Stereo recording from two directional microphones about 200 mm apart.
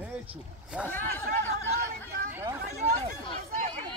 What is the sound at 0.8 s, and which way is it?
Speech, 10° left (ahead or behind).